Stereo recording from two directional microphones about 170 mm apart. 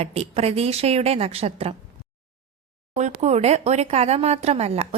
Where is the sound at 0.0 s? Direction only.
35° right (ahead or behind).